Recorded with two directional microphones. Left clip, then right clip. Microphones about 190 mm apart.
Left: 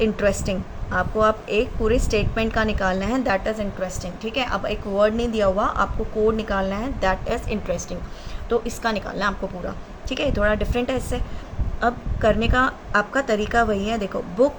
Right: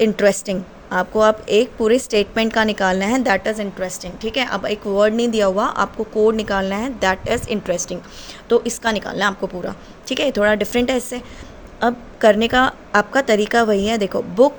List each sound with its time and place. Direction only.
0.0 s a woman's voice: 45° right (ahead or behind)